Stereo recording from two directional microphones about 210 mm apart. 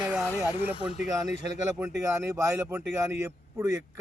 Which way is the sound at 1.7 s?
10° right (ahead or behind).